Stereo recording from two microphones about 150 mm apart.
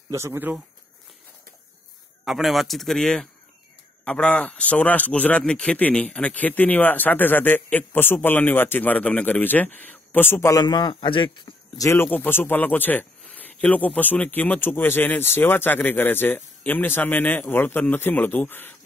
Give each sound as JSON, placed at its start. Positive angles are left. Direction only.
{"t": 0.1, "sound": "speech", "side_deg": -15}
{"t": 2.2, "sound": "a man's voice", "side_deg": 0}